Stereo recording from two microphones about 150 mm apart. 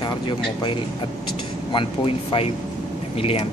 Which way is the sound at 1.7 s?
40° left (ahead or behind).